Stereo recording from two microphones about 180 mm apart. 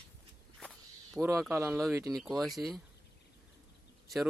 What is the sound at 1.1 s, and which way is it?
Speech, 15° right (ahead or behind).